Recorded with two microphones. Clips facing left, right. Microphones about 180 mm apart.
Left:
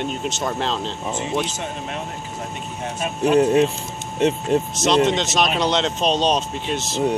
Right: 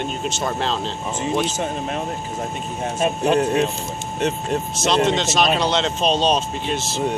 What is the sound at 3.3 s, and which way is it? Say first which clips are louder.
Speech: left 6 dB; 20° left (ahead or behind).